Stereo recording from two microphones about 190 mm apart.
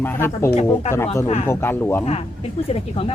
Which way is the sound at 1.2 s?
35° left (ahead or behind).